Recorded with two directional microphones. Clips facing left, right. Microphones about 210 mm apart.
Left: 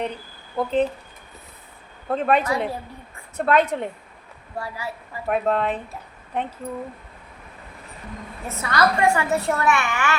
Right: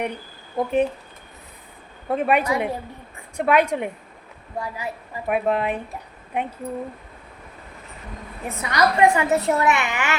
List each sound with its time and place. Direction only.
0.5 s a woman's voice: 10° right (ahead or behind)
2.0 s a woman's voice: 10° right (ahead or behind)
8.6 s a woman's voice: 20° right (ahead or behind)